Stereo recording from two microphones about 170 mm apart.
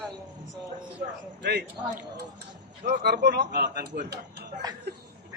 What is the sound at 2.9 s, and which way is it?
A man's voice, 80° right.